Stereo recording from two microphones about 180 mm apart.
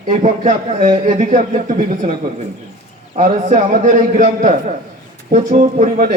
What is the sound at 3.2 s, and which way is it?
A man's voice, 45° right (ahead or behind).